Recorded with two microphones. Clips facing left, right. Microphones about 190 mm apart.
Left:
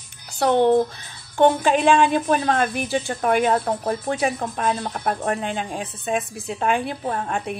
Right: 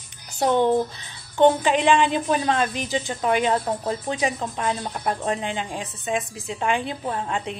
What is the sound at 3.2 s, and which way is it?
Speech, 55° left (ahead or behind).